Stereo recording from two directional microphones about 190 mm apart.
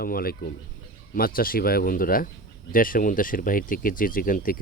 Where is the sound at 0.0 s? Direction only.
50° left (ahead or behind).